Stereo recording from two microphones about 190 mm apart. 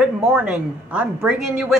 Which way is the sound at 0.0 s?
5° right (ahead or behind).